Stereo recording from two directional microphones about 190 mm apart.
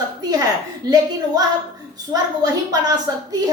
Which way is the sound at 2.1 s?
20° right (ahead or behind).